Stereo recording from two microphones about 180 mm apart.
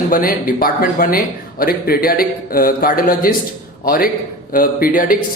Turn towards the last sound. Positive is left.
turn(degrees=50)  # may be behind; listen again after turning